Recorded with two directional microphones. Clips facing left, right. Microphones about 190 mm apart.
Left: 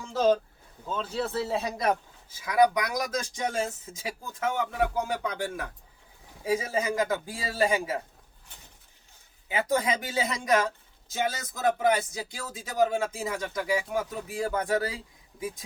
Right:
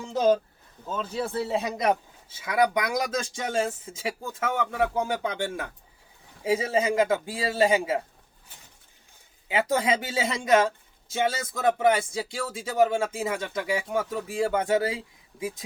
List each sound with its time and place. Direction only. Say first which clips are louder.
0.0 s a sound: right 2 dB; 15° right (ahead or behind)
0.9 s speech: right 1 dB; 10° right (ahead or behind); by 7.9 s 25° right (ahead or behind)
9.5 s speech: right 2 dB; 25° right (ahead or behind)